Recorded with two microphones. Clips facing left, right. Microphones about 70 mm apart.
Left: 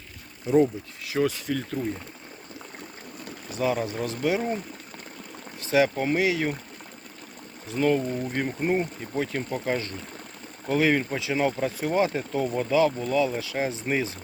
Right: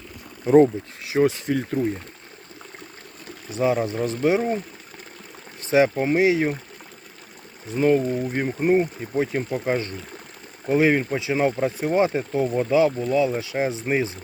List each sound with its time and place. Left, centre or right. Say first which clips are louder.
0.4 s speech: right 6 dB; right
1.1 s speech: right 5 dB; right
3.5 s speech: right 4 dB; right
4.4 s speech: right 5 dB; centre
5.7 s speech: right 4 dB; right
7.7 s speech: right 4 dB; centre